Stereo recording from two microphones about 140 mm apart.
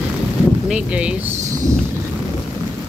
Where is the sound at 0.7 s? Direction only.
10° right (ahead or behind).